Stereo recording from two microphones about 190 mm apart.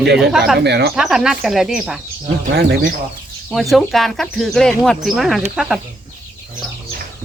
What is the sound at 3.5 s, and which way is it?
Speech, centre (ahead or behind).